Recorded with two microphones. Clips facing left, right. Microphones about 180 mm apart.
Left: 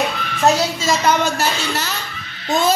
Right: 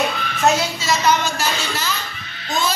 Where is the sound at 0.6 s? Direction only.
45° left (ahead or behind).